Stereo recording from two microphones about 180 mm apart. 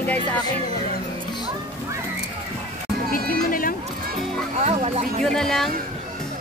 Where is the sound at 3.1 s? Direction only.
50° left (ahead or behind).